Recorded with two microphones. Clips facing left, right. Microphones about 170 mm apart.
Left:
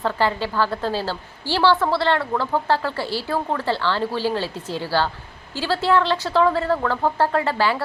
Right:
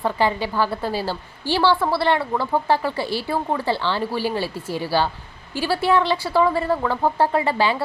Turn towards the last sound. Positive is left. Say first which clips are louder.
# right 1 dB
turn(degrees=-15)  # may be behind; listen again after turning